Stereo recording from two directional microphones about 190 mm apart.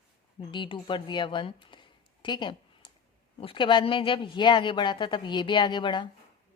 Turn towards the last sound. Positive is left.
turn(degrees=25)  # may be behind; listen again after turning